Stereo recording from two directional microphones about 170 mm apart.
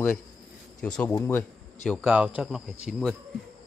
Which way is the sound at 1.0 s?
15° left (ahead or behind).